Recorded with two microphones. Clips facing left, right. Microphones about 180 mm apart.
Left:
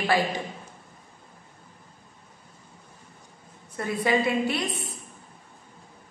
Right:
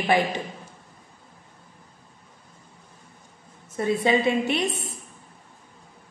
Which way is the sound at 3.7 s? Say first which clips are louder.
Right 3 dB; 25° right (ahead or behind).